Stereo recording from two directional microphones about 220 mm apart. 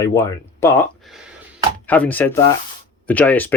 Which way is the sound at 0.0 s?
15° left (ahead or behind).